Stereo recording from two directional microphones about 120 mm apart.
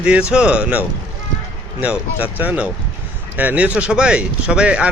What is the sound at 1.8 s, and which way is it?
Speech, 15° right (ahead or behind).